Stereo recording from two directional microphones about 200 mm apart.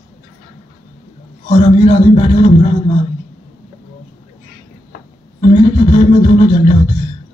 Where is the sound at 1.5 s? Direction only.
30° left (ahead or behind).